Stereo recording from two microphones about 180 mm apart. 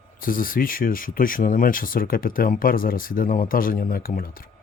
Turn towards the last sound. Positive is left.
turn(degrees=55)  # may be behind; listen again after turning